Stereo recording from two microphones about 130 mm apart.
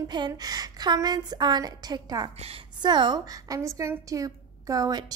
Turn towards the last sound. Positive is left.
turn(degrees=-30)  # may be behind; listen again after turning